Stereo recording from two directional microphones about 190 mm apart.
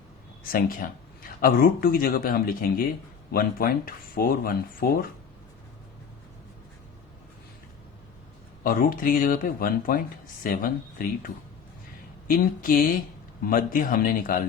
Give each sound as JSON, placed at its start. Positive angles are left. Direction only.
{"t": 0.4, "sound": "speech", "side_deg": 50}
{"t": 8.6, "sound": "speech", "side_deg": 45}
{"t": 12.3, "sound": "speech", "side_deg": 45}